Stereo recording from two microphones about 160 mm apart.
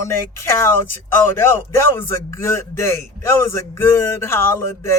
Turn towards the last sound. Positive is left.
turn(degrees=15)  # may be behind; listen again after turning